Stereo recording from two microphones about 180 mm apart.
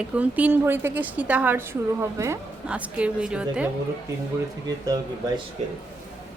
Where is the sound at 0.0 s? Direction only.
10° right (ahead or behind).